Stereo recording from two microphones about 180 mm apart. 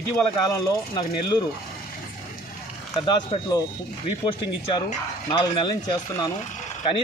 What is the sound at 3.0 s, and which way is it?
Speech, 25° left (ahead or behind).